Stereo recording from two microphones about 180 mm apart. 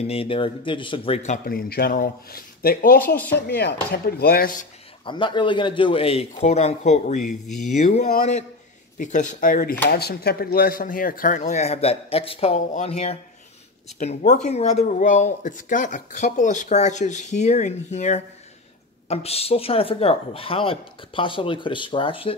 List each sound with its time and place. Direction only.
0.0 s speech: 35° left (ahead or behind); by 3.0 s 55° left (ahead or behind)
3.3 s speech: 65° left (ahead or behind)
5.0 s speech: 25° left (ahead or behind)